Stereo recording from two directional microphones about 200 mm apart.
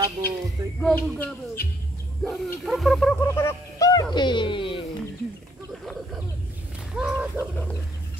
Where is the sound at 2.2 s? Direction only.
5° left (ahead or behind); by 5.0 s 25° left (ahead or behind).